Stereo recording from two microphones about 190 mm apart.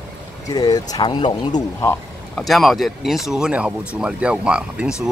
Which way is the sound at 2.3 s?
Centre (ahead or behind).